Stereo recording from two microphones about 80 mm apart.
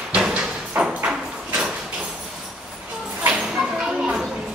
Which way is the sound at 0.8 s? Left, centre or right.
Centre.